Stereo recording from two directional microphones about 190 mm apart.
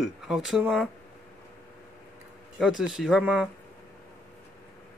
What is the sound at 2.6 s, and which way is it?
Speech, 5° right (ahead or behind).